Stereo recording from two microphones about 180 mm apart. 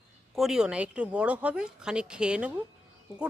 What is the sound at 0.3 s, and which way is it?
Speech, 5° right (ahead or behind).